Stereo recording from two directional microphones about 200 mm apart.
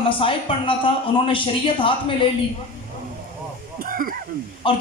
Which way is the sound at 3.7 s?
45° right (ahead or behind).